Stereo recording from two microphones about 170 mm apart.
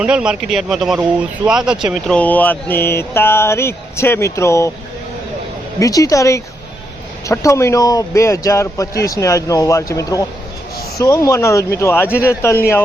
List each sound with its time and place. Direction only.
0.0 s speech: 5° right (ahead or behind)
2.0 s a man's voice: 10° left (ahead or behind)
5.8 s a man's voice: 20° left (ahead or behind)